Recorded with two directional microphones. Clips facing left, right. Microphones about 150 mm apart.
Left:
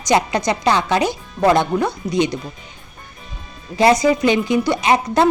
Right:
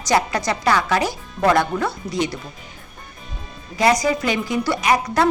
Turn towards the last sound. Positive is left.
turn(degrees=25)  # may be behind; listen again after turning